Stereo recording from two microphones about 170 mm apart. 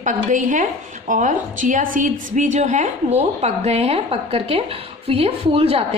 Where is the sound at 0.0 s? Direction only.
50° right (ahead or behind).